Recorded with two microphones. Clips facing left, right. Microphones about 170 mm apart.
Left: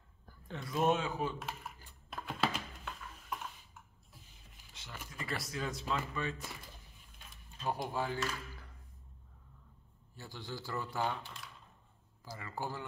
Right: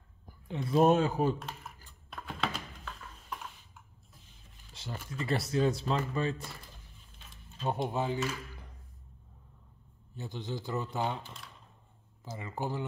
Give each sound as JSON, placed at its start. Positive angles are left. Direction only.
{"t": 0.3, "sound": "a sound", "side_deg": -15}
{"t": 0.7, "sound": "speech", "side_deg": -35}
{"t": 1.4, "sound": "computer keyboard", "side_deg": 5}
{"t": 4.7, "sound": "a sound", "side_deg": -35}
{"t": 5.2, "sound": "speech", "side_deg": -30}
{"t": 7.6, "sound": "speech", "side_deg": -25}
{"t": 10.1, "sound": "speech", "side_deg": -20}